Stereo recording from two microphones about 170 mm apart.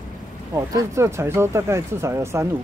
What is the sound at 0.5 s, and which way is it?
Speech, 20° right (ahead or behind).